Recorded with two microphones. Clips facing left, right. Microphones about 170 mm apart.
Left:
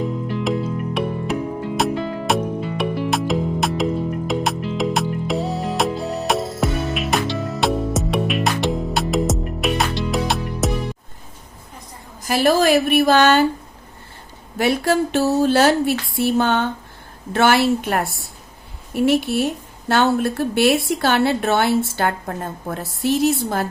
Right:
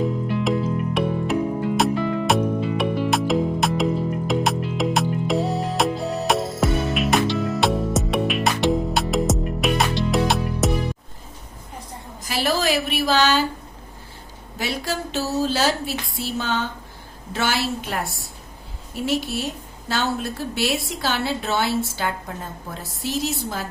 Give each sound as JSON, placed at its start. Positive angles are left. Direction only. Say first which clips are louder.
{"t": 0.5, "sound": "music", "louder": "left 1 dB", "side_deg": 0}
{"t": 12.2, "sound": "a sound", "louder": "left 7 dB", "side_deg": 50}
{"t": 14.6, "sound": "a woman's voice", "louder": "left 9 dB", "side_deg": 55}